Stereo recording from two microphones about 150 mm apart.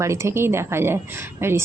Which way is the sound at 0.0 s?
20° right (ahead or behind).